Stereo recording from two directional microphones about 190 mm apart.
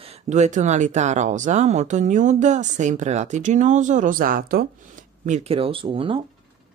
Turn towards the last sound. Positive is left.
turn(degrees=-30)  # may be behind; listen again after turning